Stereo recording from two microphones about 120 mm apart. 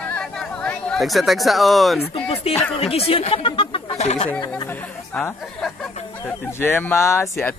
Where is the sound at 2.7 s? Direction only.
50° left (ahead or behind).